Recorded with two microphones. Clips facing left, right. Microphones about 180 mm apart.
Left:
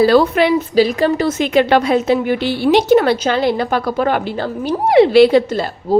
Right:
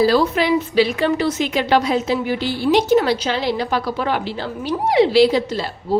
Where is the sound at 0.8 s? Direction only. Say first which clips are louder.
Left 5 dB; 40° left (ahead or behind).